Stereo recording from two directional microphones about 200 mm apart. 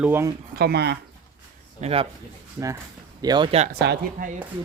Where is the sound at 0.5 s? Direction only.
55° right (ahead or behind).